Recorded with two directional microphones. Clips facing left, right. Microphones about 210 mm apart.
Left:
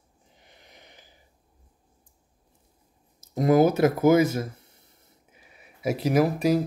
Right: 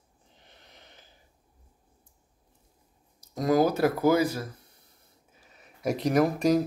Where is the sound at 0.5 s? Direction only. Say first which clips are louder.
Left 2 dB; 15° left (ahead or behind).